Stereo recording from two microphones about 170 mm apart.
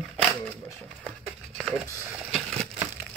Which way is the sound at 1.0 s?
Centre (ahead or behind).